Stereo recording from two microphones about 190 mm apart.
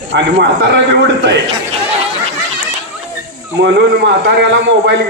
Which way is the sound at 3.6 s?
65° right (ahead or behind).